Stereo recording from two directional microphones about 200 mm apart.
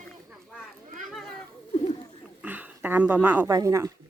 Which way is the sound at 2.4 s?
10° right (ahead or behind).